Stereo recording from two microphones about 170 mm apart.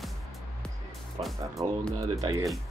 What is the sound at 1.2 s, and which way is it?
Speech, 30° right (ahead or behind).